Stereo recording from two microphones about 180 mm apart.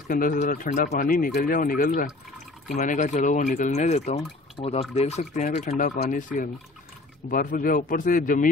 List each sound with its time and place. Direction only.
0.1 s speech: 50° left (ahead or behind)